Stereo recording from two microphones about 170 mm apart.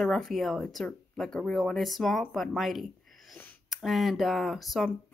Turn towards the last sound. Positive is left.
turn(degrees=0)  # may be behind; listen again after turning